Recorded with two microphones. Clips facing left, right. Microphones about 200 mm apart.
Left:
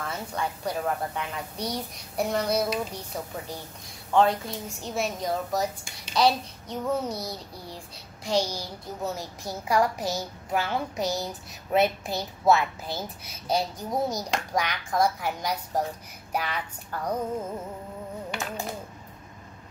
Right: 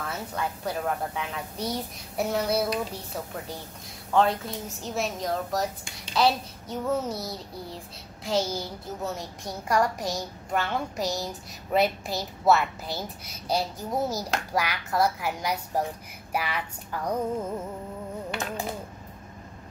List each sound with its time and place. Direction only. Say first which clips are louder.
0.0 s a woman's voice: even; 5° right (ahead or behind)
4.1 s a woman's voice: left 1 dB; centre (ahead or behind)